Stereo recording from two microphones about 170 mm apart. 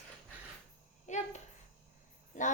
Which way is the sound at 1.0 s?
45° left (ahead or behind).